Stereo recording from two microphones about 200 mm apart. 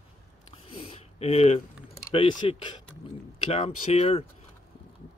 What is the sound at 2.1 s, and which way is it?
Speech, 25° left (ahead or behind).